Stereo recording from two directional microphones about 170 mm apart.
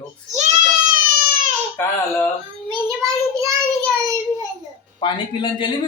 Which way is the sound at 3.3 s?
20° right (ahead or behind).